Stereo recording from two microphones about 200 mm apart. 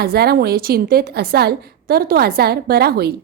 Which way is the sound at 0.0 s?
50° right (ahead or behind).